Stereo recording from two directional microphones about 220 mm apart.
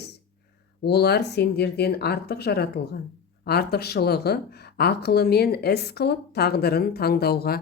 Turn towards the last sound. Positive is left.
turn(degrees=45)  # may be behind; listen again after turning